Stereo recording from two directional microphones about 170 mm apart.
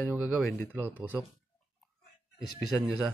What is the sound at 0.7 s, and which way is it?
Speech, 10° right (ahead or behind).